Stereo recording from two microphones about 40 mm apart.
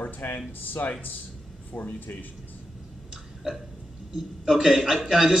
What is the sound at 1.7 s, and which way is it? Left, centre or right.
Speech, left.